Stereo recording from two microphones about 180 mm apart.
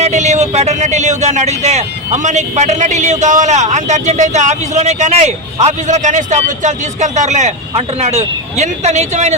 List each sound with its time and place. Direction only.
0.0 s a man's voice: 40° right (ahead or behind)